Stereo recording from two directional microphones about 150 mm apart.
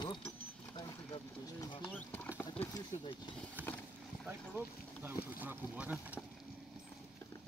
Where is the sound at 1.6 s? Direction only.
35° left (ahead or behind).